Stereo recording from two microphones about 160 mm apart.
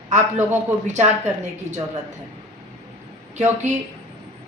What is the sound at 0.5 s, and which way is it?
Speech, 45° right (ahead or behind).